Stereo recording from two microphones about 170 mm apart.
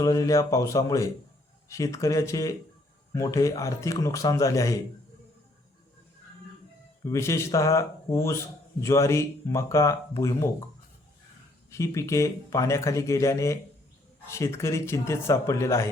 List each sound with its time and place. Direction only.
0.0 s speech: 20° left (ahead or behind)
7.0 s speech: 15° left (ahead or behind)
11.7 s speech: 15° left (ahead or behind)